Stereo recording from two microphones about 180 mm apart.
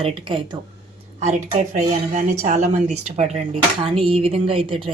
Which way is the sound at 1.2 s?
40° right (ahead or behind).